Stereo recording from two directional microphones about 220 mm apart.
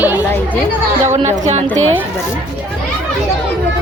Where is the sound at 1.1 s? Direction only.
30° right (ahead or behind).